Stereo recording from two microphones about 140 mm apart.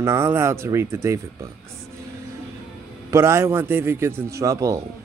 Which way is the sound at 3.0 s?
20° right (ahead or behind).